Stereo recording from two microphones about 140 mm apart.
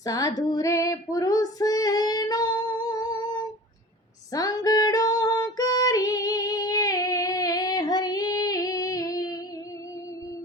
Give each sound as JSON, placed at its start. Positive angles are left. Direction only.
{"t": 0.0, "sound": "female singing", "side_deg": 25}
{"t": 4.3, "sound": "female singing", "side_deg": 25}